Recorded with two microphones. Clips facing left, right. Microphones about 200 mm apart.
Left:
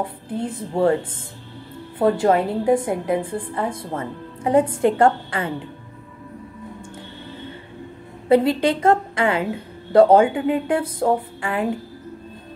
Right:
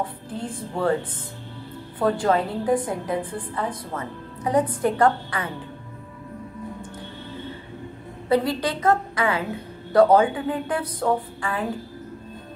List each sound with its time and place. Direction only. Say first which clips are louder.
0.0 s a woman's voice: left 4 dB; 25° left (ahead or behind)
2.0 s a woman's voice: left 4 dB; 25° left (ahead or behind)
8.3 s a woman's voice: left 5 dB; 25° left (ahead or behind)